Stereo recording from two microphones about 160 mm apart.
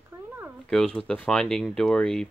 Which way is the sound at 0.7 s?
5° left (ahead or behind).